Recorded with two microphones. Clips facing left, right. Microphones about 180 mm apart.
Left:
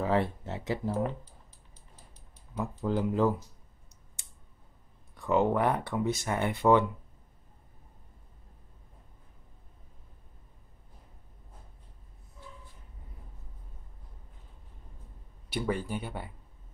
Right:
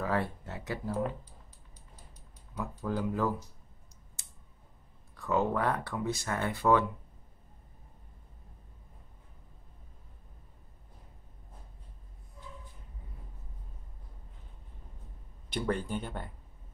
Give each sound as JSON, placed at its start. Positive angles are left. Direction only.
{"t": 0.0, "sound": "speech", "side_deg": 20}
{"t": 2.5, "sound": "speech", "side_deg": 25}
{"t": 5.1, "sound": "speech", "side_deg": 20}
{"t": 15.5, "sound": "speech", "side_deg": 5}